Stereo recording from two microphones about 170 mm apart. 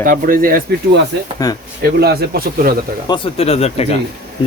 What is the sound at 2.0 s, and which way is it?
Speech, 65° right (ahead or behind).